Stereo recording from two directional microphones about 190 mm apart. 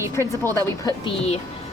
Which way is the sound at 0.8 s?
30° left (ahead or behind).